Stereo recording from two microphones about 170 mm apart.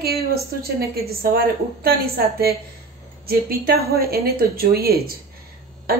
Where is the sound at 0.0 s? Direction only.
65° right (ahead or behind).